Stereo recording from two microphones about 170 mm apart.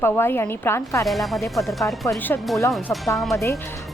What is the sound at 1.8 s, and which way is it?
Speech, 15° left (ahead or behind).